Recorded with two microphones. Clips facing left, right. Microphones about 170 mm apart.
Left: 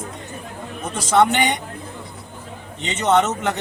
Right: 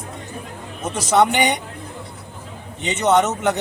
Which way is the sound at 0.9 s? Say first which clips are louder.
Even; 15° right (ahead or behind).